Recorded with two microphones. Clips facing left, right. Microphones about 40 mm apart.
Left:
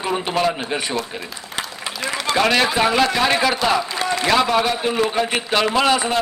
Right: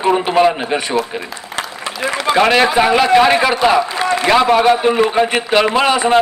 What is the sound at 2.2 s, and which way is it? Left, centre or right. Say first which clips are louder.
A man's voice: right 5 dB; centre.